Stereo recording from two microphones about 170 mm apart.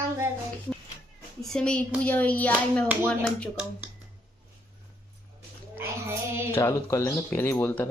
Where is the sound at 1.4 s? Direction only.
5° left (ahead or behind).